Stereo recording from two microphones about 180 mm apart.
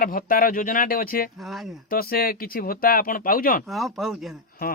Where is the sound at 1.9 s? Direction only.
55° left (ahead or behind).